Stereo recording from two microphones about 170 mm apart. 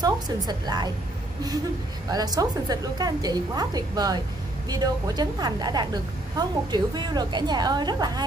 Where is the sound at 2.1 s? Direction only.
20° right (ahead or behind).